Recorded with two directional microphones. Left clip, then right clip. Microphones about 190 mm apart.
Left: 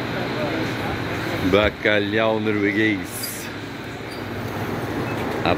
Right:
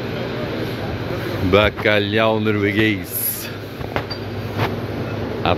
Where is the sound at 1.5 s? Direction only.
10° right (ahead or behind).